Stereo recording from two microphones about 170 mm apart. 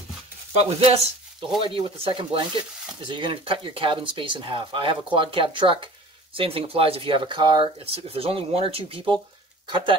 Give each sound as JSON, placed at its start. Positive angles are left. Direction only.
{"t": 0.5, "sound": "speech", "side_deg": -40}